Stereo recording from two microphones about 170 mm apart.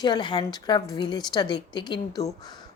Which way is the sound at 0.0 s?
25° left (ahead or behind).